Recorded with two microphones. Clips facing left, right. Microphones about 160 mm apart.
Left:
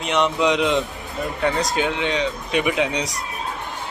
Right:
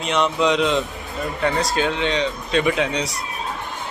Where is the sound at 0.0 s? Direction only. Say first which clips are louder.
Even; 15° left (ahead or behind).